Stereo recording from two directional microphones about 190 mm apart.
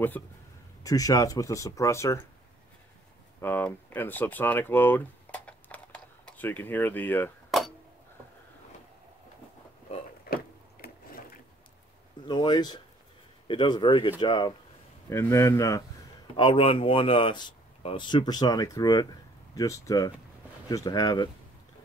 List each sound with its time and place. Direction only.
0.2 s speech: 10° left (ahead or behind)
3.3 s speech: 10° left (ahead or behind)
7.5 s a sound: centre (ahead or behind)
12.3 s speech: 25° left (ahead or behind)
15.0 s speech: 15° left (ahead or behind)
16.3 s speech: 25° left (ahead or behind)